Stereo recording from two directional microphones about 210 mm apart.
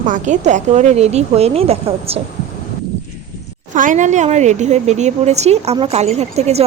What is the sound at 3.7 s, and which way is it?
A woman's voice, 40° right (ahead or behind).